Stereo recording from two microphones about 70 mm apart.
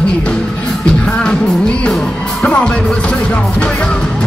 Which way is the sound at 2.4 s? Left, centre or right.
Centre.